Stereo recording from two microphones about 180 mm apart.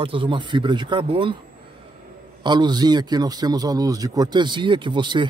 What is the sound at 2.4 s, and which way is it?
Speech, 25° right (ahead or behind).